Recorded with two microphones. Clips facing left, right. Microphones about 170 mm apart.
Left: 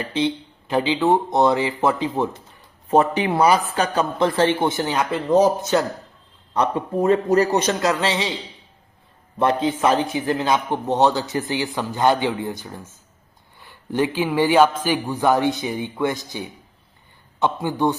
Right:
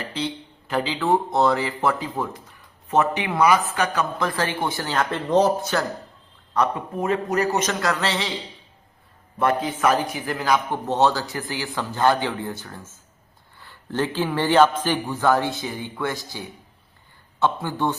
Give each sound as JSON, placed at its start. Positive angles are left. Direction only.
{"t": 0.1, "sound": "a man's voice", "side_deg": 20}
{"t": 5.5, "sound": "a man's voice", "side_deg": 20}
{"t": 7.0, "sound": "a man's voice", "side_deg": 35}
{"t": 9.4, "sound": "a man's voice", "side_deg": 25}